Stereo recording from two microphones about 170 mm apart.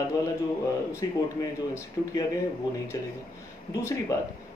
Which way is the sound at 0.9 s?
15° left (ahead or behind).